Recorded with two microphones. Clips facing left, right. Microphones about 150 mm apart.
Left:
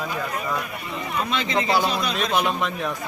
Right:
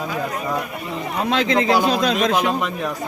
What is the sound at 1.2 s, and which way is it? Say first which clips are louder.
Speech: right 6 dB; 90° right.